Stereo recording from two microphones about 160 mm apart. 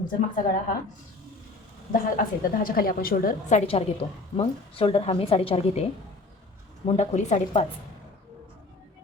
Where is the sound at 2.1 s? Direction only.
60° left (ahead or behind); by 5.8 s 35° left (ahead or behind).